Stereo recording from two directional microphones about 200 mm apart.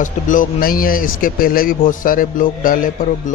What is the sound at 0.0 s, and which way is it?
Speech, 40° left (ahead or behind).